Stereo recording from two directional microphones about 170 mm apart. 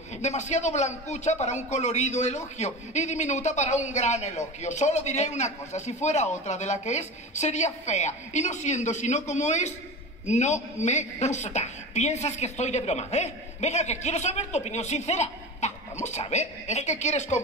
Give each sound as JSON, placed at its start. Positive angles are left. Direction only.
{"t": 0.2, "sound": "a man's voice", "side_deg": 40}